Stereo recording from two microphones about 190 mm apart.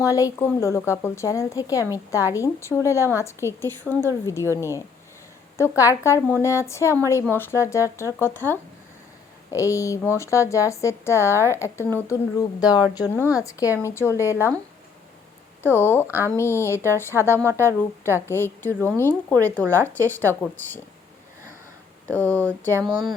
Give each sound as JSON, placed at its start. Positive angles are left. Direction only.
{"t": 0.0, "sound": "speech", "side_deg": 15}
{"t": 5.5, "sound": "speech", "side_deg": 15}
{"t": 14.3, "sound": "speech", "side_deg": -10}
{"t": 15.6, "sound": "speech", "side_deg": 10}
{"t": 16.0, "sound": "speech", "side_deg": -10}
{"t": 16.4, "sound": "speech", "side_deg": 15}
{"t": 22.0, "sound": "speech", "side_deg": 10}